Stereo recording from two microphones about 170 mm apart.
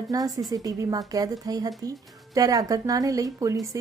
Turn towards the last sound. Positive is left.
turn(degrees=-20)  # may be behind; listen again after turning